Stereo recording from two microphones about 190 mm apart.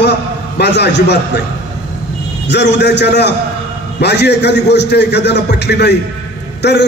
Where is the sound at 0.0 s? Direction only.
60° left (ahead or behind).